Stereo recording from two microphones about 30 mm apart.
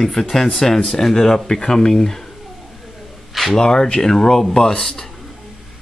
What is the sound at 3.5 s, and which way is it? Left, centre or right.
Speech, left.